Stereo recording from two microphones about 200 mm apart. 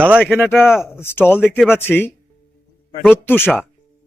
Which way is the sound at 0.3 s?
10° left (ahead or behind).